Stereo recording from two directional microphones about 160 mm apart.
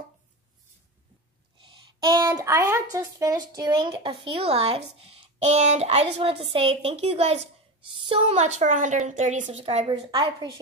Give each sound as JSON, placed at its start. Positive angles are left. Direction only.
{"t": 1.6, "sound": "a woman's voice", "side_deg": -30}